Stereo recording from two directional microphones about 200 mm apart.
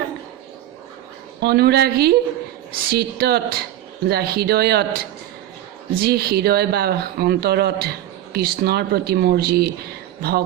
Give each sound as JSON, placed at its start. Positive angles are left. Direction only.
{"t": 1.4, "sound": "speech", "side_deg": -55}